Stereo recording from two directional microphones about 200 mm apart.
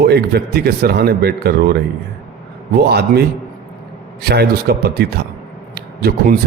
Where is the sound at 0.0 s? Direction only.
55° right (ahead or behind).